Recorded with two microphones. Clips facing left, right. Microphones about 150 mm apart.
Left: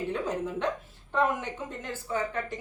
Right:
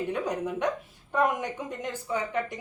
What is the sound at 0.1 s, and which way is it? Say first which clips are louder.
A woman's voice: right 1 dB; 15° right (ahead or behind).